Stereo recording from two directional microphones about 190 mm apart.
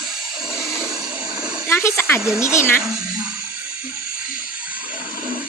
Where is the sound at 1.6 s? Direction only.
15° left (ahead or behind).